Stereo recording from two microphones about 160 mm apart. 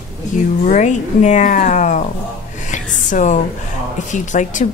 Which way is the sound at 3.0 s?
50° left (ahead or behind).